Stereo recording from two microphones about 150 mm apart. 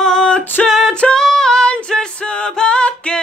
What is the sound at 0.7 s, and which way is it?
Female singing, centre (ahead or behind).